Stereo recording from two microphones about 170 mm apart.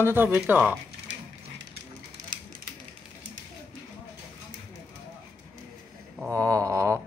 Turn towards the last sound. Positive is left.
turn(degrees=-15)  # may be behind; listen again after turning